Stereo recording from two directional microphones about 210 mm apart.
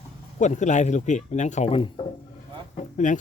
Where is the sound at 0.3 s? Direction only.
35° left (ahead or behind).